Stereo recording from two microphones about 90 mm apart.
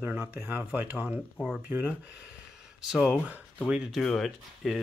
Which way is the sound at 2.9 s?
10° right (ahead or behind).